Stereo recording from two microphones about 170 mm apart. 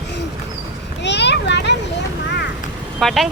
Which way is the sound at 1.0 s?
85° left.